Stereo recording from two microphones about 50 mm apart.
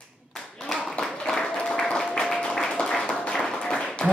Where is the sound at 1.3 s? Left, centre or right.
Centre.